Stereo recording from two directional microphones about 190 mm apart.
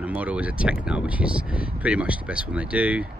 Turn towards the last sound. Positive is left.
turn(degrees=-5)  # may be behind; listen again after turning